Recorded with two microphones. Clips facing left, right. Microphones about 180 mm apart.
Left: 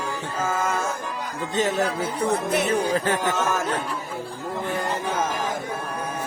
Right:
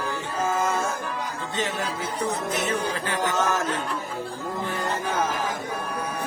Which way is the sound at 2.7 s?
45° left (ahead or behind).